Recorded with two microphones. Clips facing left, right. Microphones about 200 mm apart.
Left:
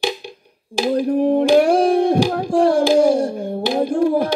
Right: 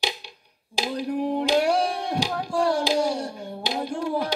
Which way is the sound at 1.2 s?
55° left (ahead or behind).